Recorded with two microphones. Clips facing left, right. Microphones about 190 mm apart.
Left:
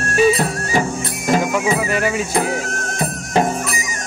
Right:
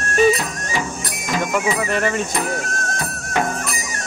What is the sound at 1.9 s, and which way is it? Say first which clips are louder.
Speech: left 1 dB; 5° left (ahead or behind).